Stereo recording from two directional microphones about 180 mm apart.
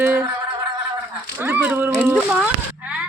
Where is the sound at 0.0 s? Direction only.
10° right (ahead or behind).